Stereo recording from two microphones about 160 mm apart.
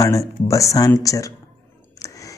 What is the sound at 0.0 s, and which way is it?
Speech, 20° left (ahead or behind).